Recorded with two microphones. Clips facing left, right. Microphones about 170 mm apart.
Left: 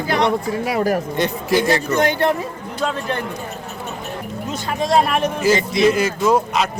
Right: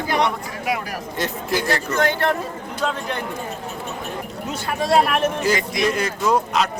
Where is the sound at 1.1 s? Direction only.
Centre (ahead or behind).